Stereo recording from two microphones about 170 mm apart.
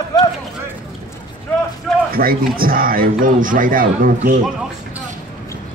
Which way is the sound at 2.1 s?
60° right (ahead or behind).